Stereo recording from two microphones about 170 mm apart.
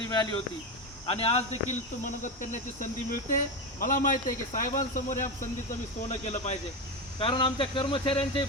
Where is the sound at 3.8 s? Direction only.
50° left (ahead or behind).